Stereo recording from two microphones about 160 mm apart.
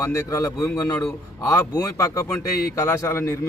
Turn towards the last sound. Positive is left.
turn(degrees=15)  # may be behind; listen again after turning